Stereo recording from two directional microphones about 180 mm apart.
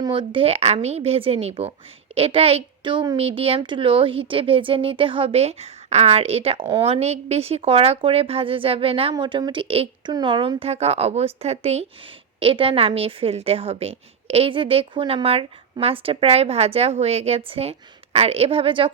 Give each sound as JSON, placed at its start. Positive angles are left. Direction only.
{"t": 0.0, "sound": "a woman's voice", "side_deg": -25}